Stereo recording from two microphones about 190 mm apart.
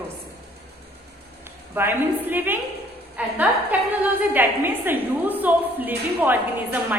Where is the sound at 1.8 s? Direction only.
10° right (ahead or behind).